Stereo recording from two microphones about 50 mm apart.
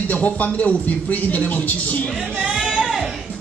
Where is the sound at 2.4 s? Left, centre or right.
Centre.